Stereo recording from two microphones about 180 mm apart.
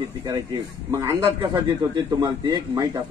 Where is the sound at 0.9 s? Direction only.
15° right (ahead or behind).